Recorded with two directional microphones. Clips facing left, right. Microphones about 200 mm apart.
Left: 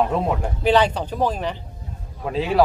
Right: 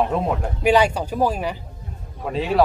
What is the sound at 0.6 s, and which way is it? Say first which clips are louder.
Speech: right 1 dB; 10° right (ahead or behind).